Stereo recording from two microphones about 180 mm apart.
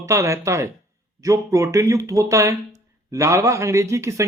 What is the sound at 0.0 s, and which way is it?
Speech, 15° right (ahead or behind).